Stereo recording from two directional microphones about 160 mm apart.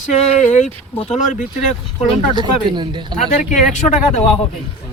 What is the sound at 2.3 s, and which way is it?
Speech, 25° right (ahead or behind).